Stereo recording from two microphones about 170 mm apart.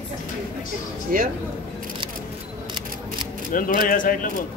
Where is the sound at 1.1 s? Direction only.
55° right (ahead or behind).